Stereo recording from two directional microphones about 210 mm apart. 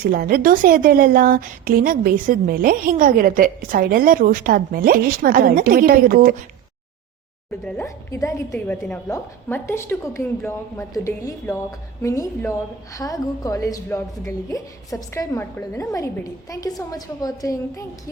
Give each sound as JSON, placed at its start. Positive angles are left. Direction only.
{"t": 0.0, "sound": "a woman's voice", "side_deg": -45}
{"t": 7.6, "sound": "a woman's voice", "side_deg": 10}